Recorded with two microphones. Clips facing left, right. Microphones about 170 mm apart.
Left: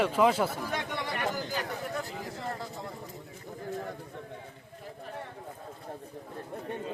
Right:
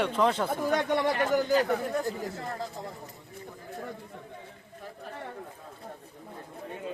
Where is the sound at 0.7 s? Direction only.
40° right (ahead or behind).